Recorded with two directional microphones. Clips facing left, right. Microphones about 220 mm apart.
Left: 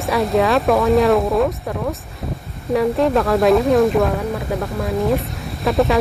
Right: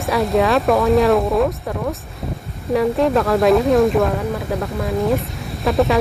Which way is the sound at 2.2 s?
Centre (ahead or behind).